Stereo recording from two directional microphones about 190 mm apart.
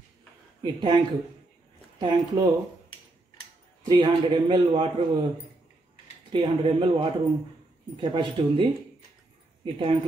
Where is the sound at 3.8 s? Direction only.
25° right (ahead or behind).